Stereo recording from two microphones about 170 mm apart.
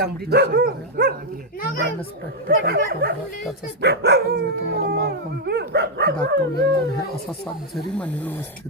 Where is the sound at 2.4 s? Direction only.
65° right (ahead or behind).